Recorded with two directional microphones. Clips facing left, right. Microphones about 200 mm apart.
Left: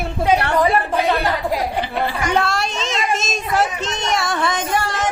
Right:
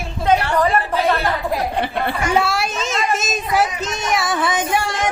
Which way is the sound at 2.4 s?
5° right (ahead or behind).